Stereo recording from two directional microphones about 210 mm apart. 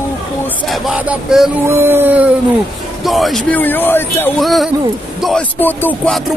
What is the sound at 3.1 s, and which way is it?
Music, centre (ahead or behind).